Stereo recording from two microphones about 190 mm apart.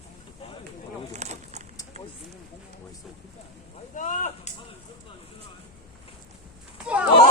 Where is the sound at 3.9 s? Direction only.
40° left (ahead or behind).